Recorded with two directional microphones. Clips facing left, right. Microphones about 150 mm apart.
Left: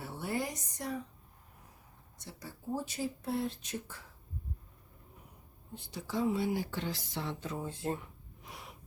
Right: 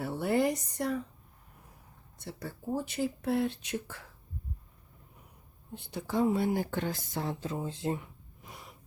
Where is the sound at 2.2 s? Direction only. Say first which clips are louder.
Right 7 dB; 60° right (ahead or behind).